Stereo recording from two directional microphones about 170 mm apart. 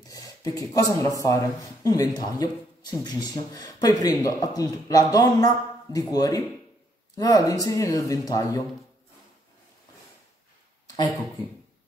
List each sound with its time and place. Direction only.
0.0 s speech: 20° left (ahead or behind)